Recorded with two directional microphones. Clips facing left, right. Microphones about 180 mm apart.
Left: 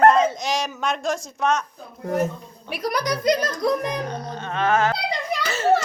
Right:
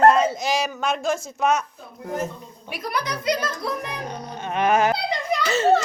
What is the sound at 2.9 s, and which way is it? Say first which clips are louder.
Speech: left 4 dB; 40° left (ahead or behind).